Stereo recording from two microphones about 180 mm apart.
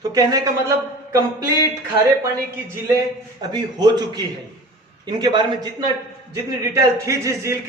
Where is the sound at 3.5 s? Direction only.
25° right (ahead or behind).